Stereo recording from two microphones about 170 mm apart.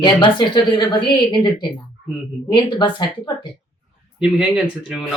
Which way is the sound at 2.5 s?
25° left (ahead or behind).